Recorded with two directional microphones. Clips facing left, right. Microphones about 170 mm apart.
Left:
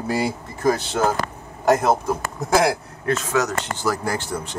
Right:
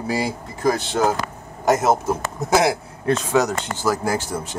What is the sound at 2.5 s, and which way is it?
Speech, 20° right (ahead or behind).